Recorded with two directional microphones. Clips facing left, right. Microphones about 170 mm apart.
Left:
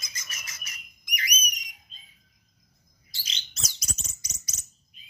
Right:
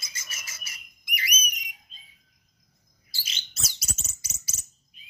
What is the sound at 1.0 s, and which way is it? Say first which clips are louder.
Whistle: even; 5° right (ahead or behind).